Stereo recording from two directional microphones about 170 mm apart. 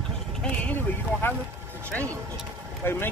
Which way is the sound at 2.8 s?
15° left (ahead or behind).